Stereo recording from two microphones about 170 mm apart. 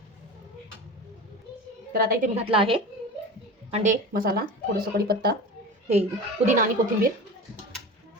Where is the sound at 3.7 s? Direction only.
50° right (ahead or behind); by 5.3 s 65° right (ahead or behind).